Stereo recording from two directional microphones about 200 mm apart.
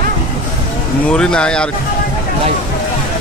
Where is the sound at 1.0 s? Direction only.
5° left (ahead or behind).